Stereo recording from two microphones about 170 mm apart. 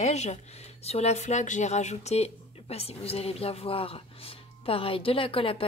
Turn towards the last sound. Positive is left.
turn(degrees=30)  # may be behind; listen again after turning